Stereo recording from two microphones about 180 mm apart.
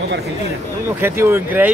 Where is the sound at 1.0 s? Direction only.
15° right (ahead or behind).